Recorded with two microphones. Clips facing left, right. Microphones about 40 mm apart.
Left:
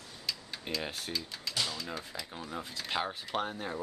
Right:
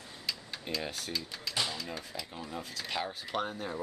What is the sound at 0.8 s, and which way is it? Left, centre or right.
Speech, centre.